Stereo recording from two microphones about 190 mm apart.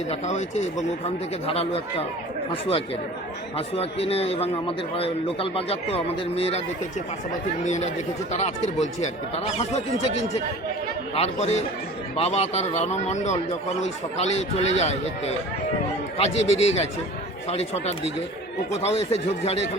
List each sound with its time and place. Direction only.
0.1 s speech: 35° left (ahead or behind)
7.6 s speech: 40° left (ahead or behind)
11.1 s speech: 35° left (ahead or behind)